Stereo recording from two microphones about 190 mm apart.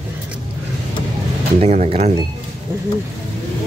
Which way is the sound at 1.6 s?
35° right (ahead or behind).